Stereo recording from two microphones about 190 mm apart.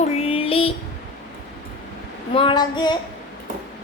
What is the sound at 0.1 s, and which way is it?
Child singing, 30° left (ahead or behind).